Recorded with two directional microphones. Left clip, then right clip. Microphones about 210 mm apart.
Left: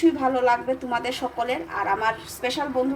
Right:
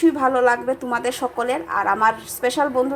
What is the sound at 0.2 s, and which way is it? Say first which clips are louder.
A woman's voice: right 4 dB; 25° right (ahead or behind).